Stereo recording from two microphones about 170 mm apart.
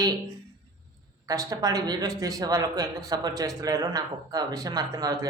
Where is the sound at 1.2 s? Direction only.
20° right (ahead or behind).